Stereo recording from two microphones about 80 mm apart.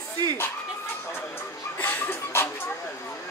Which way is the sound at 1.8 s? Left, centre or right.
Left.